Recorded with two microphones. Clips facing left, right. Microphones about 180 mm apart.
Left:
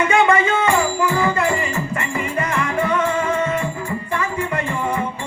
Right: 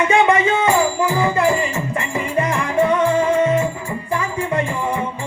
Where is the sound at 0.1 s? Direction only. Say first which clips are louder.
Right 1 dB; 25° right (ahead or behind).